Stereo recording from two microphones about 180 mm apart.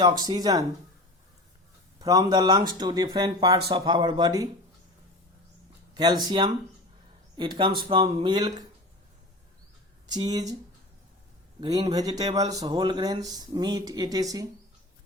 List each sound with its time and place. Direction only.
0.2 s speech: 20° right (ahead or behind)
2.0 s speech: 20° right (ahead or behind)
5.9 s speech: 25° right (ahead or behind)
10.1 s speech: 20° right (ahead or behind)
11.6 s speech: 25° right (ahead or behind)